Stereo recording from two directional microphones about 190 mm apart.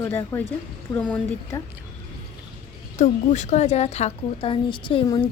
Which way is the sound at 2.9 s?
40° left (ahead or behind).